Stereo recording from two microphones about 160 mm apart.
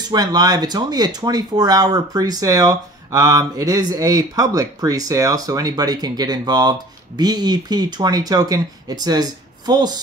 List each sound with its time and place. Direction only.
0.1 s speech: 25° right (ahead or behind)